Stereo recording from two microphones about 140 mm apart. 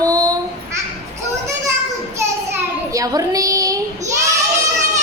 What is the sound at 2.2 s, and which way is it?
Child singing, 20° right (ahead or behind).